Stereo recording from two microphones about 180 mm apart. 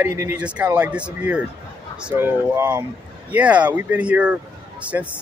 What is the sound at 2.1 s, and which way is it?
Speech, 15° right (ahead or behind).